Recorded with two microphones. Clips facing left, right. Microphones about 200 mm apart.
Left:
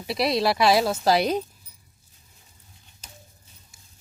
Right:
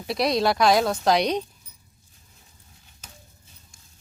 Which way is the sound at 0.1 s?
Centre (ahead or behind).